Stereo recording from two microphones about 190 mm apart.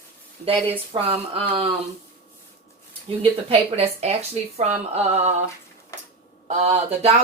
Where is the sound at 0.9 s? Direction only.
30° right (ahead or behind).